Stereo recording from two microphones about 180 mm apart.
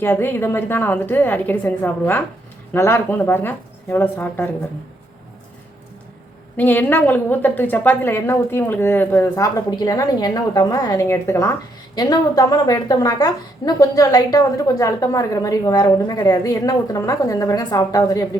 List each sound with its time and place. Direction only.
0.0 s a woman's voice: 10° left (ahead or behind)
6.6 s a woman's voice: 10° left (ahead or behind)